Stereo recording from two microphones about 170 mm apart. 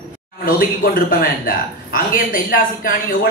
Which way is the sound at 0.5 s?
60° left (ahead or behind).